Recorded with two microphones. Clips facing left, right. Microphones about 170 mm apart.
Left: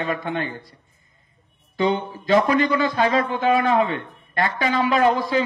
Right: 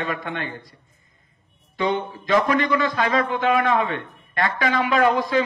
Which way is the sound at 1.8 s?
30° left (ahead or behind).